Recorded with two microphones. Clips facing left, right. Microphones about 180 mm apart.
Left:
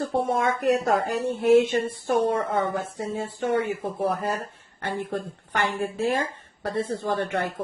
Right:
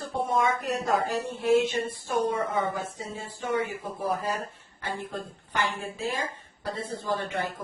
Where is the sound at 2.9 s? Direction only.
55° left (ahead or behind).